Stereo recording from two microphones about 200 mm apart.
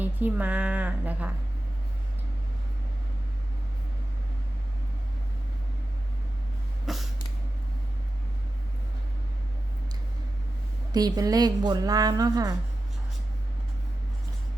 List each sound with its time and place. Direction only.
0.0 s speech: 10° right (ahead or behind)
6.8 s a sound: centre (ahead or behind)
10.9 s a woman's voice: 20° right (ahead or behind)